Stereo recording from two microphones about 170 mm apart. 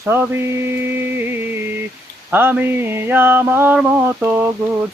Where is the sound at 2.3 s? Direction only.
10° right (ahead or behind).